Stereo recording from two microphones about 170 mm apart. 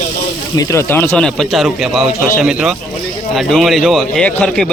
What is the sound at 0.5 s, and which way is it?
Speech, 20° left (ahead or behind).